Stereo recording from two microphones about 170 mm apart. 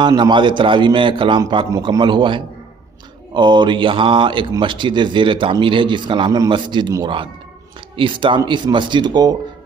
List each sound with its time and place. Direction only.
0.0 s speech: 25° right (ahead or behind)